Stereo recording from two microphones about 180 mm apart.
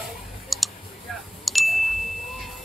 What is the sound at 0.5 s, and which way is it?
Clicking, centre (ahead or behind).